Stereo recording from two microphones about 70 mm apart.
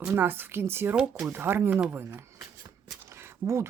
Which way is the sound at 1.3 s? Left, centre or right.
Right.